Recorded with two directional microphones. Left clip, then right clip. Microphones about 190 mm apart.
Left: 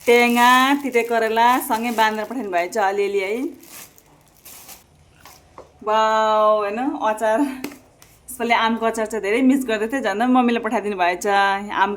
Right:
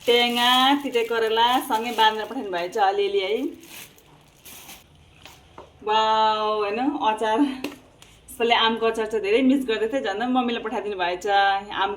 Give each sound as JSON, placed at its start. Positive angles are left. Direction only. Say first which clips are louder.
{"t": 0.1, "sound": "speech", "louder": "left 4 dB", "side_deg": 80}
{"t": 0.4, "sound": "speech", "louder": "left 4 dB", "side_deg": 30}
{"t": 5.8, "sound": "speech", "louder": "left 2 dB", "side_deg": 30}